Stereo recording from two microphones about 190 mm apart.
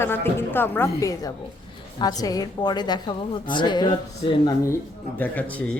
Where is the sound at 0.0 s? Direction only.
10° left (ahead or behind); by 4.4 s 25° left (ahead or behind).